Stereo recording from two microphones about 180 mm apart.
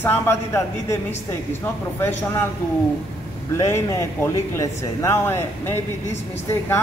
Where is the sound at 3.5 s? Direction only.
15° left (ahead or behind).